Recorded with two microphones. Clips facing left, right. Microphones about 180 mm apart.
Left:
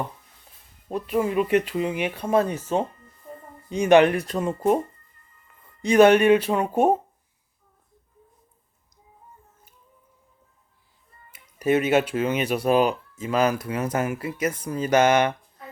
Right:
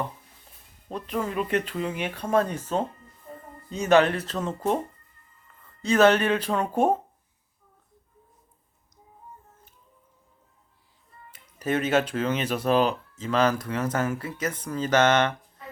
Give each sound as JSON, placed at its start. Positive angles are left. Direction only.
{"t": 0.9, "sound": "speech", "side_deg": 10}
{"t": 5.8, "sound": "speech", "side_deg": 15}
{"t": 11.3, "sound": "speech", "side_deg": 10}